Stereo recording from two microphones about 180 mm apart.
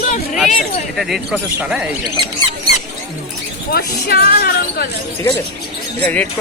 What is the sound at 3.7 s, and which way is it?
Speech, 55° left (ahead or behind).